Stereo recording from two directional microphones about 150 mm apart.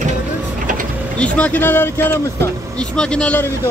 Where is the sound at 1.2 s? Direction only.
10° left (ahead or behind).